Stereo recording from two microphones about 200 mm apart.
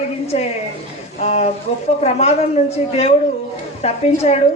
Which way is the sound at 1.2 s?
30° left (ahead or behind).